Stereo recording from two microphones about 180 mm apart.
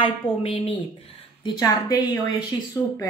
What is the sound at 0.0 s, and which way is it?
A woman's voice, 30° left (ahead or behind).